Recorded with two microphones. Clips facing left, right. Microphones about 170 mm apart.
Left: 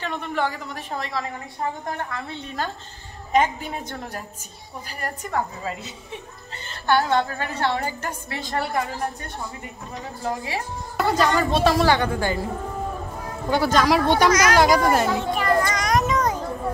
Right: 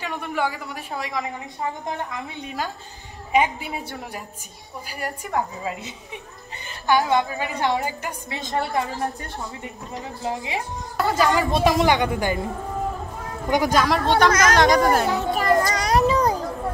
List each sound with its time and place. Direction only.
0.0 s a woman's voice: 10° right (ahead or behind)
10.2 s a woman's voice: 20° right (ahead or behind)
13.5 s a woman's voice: 15° right (ahead or behind)
13.8 s speech: 10° left (ahead or behind)
15.1 s children playing: 40° right (ahead or behind)